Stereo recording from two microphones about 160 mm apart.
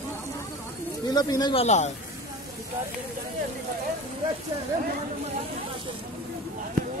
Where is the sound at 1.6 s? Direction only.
45° left (ahead or behind).